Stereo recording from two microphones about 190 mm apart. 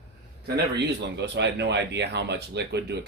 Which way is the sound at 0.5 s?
65° right (ahead or behind).